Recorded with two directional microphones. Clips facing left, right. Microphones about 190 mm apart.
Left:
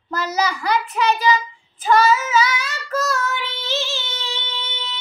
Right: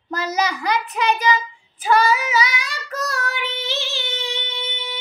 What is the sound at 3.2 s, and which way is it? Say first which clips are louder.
Child singing: left 1 dB; 65° right (ahead or behind).